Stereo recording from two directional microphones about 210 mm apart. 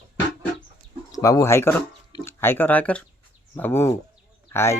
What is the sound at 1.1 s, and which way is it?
Speech, 15° left (ahead or behind).